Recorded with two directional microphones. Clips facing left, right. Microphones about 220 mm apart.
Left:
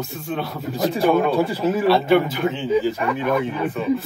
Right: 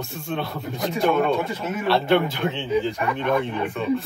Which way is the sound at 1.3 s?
30° left (ahead or behind).